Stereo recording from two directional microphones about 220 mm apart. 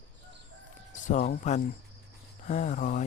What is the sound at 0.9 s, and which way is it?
Speech, 35° left (ahead or behind).